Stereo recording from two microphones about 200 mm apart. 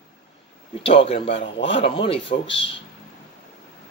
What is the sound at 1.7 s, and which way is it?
Speech, 25° left (ahead or behind).